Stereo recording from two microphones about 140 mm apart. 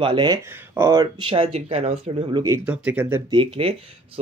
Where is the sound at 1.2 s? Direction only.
45° right (ahead or behind).